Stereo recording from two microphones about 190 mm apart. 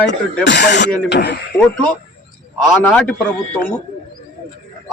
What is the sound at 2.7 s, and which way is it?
Speech, 5° left (ahead or behind).